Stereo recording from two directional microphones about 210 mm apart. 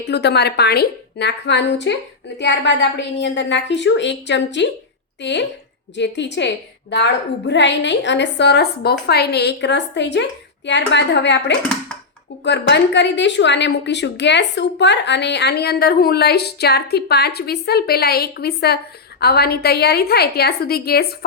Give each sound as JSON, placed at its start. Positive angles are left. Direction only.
{"t": 0.0, "sound": "a woman's voice", "side_deg": 50}